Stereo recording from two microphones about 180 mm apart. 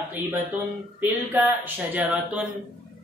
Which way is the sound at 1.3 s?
10° right (ahead or behind).